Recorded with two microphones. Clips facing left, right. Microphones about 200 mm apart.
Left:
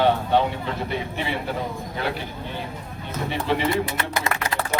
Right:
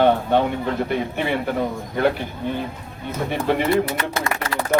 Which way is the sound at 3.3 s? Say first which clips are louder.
Right 3 dB; 55° right (ahead or behind).